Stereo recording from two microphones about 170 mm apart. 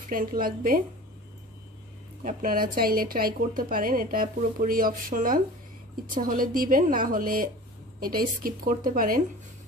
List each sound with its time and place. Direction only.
0.1 s a woman's voice: 55° right (ahead or behind)
2.2 s a woman's voice: 55° right (ahead or behind)